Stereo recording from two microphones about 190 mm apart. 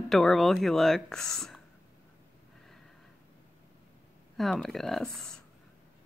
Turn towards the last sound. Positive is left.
turn(degrees=5)  # may be behind; listen again after turning